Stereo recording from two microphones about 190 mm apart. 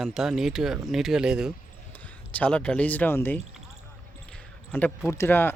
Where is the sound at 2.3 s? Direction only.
5° left (ahead or behind).